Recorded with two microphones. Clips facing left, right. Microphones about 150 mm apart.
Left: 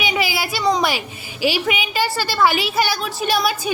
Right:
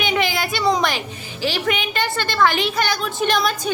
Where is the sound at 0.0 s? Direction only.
5° left (ahead or behind).